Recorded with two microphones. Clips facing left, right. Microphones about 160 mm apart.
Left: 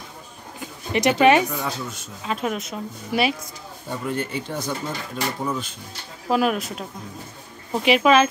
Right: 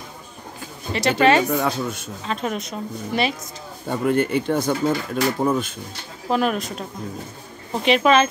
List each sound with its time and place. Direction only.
0.6 s a sound: 15° left (ahead or behind)
1.5 s speech: 65° right (ahead or behind)
2.2 s a woman's voice: 5° left (ahead or behind)
4.1 s speech: 60° right (ahead or behind)
6.3 s a woman's voice: 5° left (ahead or behind)